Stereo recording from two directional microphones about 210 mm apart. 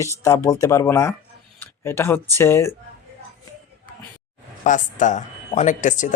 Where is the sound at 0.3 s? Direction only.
15° left (ahead or behind).